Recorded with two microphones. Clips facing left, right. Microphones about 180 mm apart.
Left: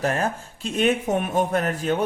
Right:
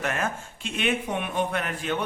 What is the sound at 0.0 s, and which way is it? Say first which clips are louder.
A man's voice: left 5 dB; 35° left (ahead or behind).